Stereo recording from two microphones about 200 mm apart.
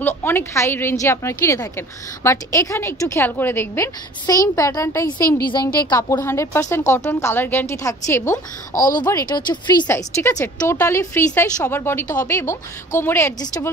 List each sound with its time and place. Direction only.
0.0 s a woman's voice: 10° left (ahead or behind)
8.7 s a woman's voice: 40° left (ahead or behind)
9.0 s a woman's voice: 20° left (ahead or behind)